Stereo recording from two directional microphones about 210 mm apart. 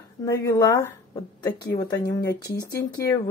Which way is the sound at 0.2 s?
15° left (ahead or behind).